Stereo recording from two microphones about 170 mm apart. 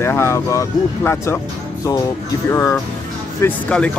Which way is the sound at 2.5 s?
15° left (ahead or behind).